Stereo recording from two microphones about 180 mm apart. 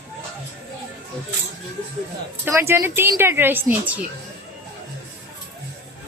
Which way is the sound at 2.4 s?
15° right (ahead or behind).